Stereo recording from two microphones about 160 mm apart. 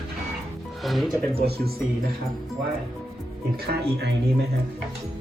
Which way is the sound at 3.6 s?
90° right.